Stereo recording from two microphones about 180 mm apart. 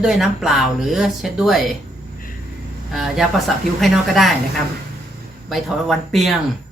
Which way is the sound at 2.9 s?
Centre (ahead or behind).